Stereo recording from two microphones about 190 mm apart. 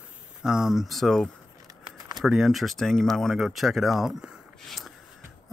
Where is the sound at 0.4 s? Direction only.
5° right (ahead or behind).